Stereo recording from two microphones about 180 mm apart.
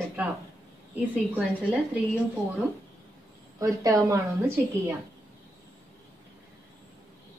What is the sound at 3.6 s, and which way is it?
Speech, 20° right (ahead or behind).